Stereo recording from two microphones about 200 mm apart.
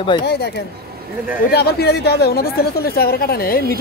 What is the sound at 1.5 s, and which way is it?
Speech, 55° left (ahead or behind).